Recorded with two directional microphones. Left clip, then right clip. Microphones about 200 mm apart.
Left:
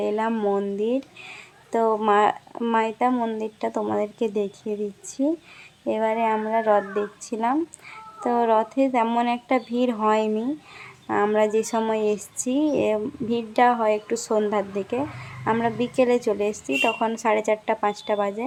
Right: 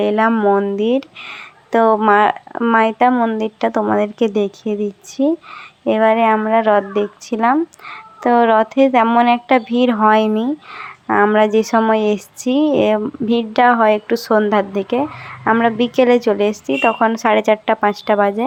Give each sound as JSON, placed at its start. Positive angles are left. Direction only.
{"t": 0.0, "sound": "a woman's voice", "side_deg": -15}